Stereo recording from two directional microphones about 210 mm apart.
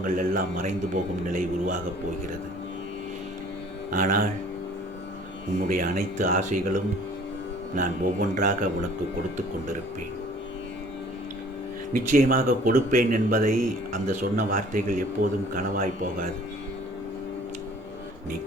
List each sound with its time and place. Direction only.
0.0 s speech: 40° right (ahead or behind)
3.9 s speech: 40° right (ahead or behind)
5.6 s speech: 40° right (ahead or behind)
11.9 s speech: 40° right (ahead or behind)